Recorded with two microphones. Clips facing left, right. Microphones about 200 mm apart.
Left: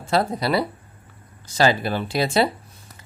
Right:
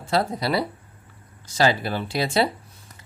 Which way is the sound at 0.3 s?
60° left (ahead or behind).